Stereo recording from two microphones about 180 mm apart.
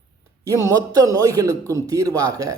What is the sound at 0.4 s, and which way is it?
A man's voice, 20° right (ahead or behind).